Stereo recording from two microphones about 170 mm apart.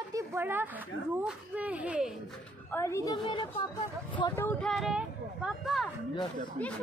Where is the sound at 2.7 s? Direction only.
15° left (ahead or behind).